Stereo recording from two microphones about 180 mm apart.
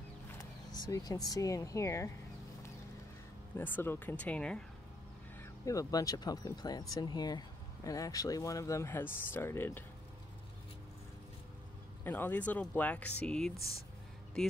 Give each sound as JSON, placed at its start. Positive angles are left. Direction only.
{"t": 0.4, "sound": "speech", "side_deg": 20}
{"t": 3.5, "sound": "speech", "side_deg": 10}
{"t": 5.4, "sound": "speech", "side_deg": 20}
{"t": 12.0, "sound": "speech", "side_deg": 10}